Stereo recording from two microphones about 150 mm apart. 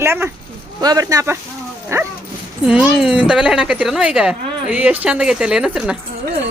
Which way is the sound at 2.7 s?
5° right (ahead or behind).